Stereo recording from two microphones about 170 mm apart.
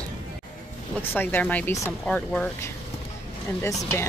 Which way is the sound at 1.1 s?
10° left (ahead or behind).